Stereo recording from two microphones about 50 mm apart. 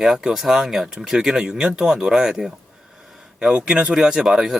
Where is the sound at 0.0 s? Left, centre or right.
Centre.